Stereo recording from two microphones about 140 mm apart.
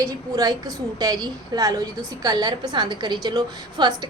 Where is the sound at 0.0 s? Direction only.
25° right (ahead or behind).